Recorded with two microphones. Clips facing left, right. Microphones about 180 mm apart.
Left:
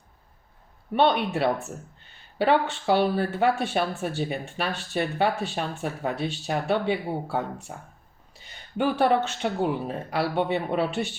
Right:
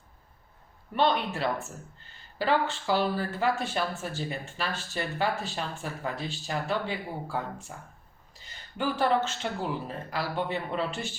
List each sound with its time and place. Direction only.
0.9 s speech: 65° left (ahead or behind)